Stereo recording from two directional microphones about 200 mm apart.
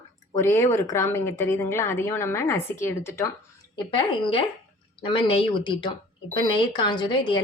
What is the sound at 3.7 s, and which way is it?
A woman's voice, 25° left (ahead or behind).